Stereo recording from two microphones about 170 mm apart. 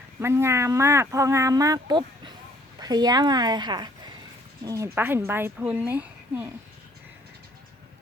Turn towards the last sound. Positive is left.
turn(degrees=-10)  # may be behind; listen again after turning